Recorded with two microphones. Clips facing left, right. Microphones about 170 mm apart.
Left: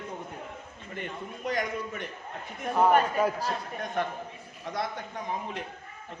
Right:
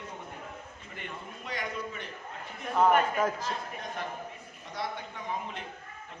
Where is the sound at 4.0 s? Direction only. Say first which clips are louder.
Left 9 dB; 55° left (ahead or behind).